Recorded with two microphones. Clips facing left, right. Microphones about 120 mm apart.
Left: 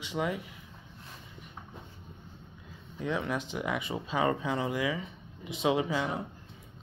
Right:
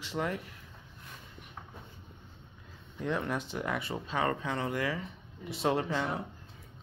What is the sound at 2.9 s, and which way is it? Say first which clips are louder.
Speech: left 1 dB; centre (ahead or behind).